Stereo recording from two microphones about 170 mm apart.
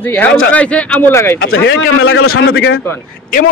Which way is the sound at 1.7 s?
80° left.